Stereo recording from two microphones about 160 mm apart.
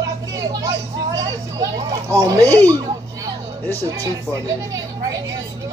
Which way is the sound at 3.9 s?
20° right (ahead or behind).